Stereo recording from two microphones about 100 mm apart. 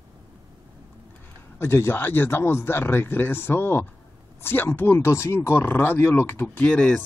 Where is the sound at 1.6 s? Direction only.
25° left (ahead or behind).